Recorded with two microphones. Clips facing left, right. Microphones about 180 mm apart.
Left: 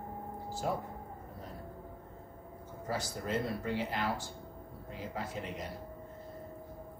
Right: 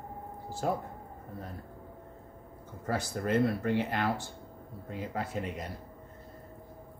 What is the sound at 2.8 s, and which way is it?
Speech, 60° right (ahead or behind).